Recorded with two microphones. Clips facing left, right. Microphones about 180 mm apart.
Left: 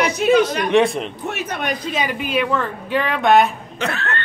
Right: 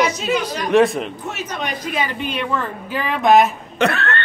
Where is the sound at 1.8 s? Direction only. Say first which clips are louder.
Right 1 dB; 20° left (ahead or behind).